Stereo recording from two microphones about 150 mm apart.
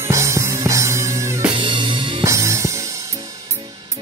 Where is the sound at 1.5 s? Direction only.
35° right (ahead or behind).